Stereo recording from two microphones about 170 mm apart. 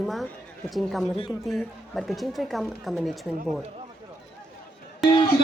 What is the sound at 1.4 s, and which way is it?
A woman's voice, centre (ahead or behind).